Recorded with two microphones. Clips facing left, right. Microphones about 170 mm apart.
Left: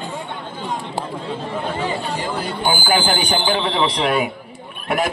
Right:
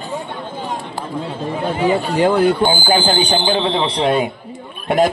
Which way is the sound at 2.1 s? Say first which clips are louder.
Right 12 dB; 60° right (ahead or behind).